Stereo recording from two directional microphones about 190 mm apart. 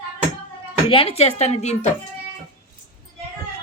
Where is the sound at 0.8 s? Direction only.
30° left (ahead or behind).